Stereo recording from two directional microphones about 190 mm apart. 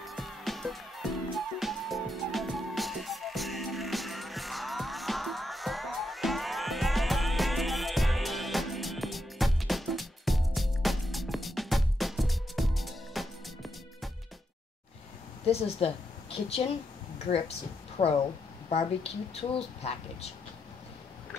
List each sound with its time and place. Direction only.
0.0 s music: centre (ahead or behind)
15.4 s a woman's voice: 30° left (ahead or behind)
19.8 s speech: 35° left (ahead or behind)